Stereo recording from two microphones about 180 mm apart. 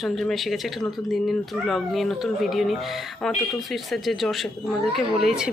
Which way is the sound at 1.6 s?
Centre (ahead or behind).